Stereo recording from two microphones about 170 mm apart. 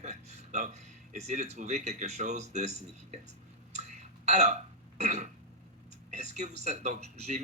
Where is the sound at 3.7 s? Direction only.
40° right (ahead or behind).